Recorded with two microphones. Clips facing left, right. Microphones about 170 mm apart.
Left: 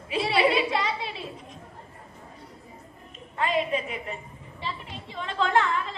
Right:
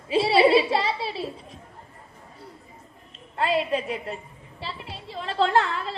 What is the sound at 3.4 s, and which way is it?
Speech, 35° right (ahead or behind).